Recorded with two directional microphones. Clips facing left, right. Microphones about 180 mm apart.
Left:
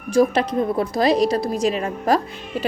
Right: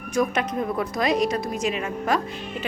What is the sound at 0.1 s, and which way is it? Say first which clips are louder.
A woman's voice: left 6 dB; 30° left (ahead or behind).